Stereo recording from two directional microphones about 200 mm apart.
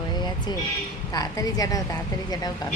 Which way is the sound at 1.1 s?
20° left (ahead or behind).